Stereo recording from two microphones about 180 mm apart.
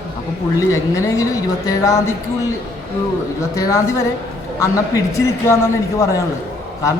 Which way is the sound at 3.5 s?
20° left (ahead or behind).